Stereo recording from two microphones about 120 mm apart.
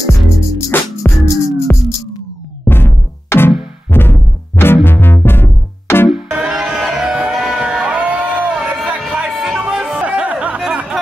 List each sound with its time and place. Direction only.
0.7 s music: 20° left (ahead or behind)
6.3 s music: 5° right (ahead or behind)